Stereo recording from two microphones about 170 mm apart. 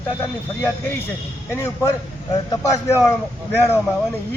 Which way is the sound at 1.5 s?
15° left (ahead or behind).